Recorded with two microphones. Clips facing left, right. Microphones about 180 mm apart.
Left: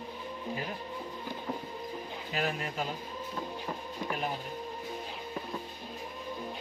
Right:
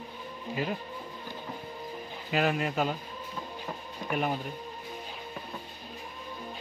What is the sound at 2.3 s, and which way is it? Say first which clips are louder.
Speech: right 7 dB; 85° right.